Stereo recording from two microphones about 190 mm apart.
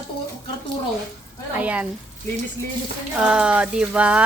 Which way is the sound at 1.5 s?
10° right (ahead or behind).